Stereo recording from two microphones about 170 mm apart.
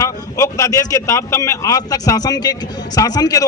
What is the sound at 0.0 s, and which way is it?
A man's voice, 20° left (ahead or behind).